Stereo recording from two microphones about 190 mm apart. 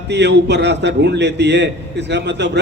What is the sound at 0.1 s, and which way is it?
A man's voice, 65° right (ahead or behind).